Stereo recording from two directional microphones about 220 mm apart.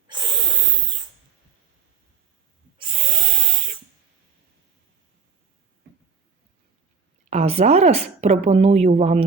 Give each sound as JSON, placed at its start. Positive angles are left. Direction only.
{"t": 0.1, "sound": "wheeze", "side_deg": -20}
{"t": 2.7, "sound": "a sound", "side_deg": -20}
{"t": 7.3, "sound": "speech", "side_deg": -30}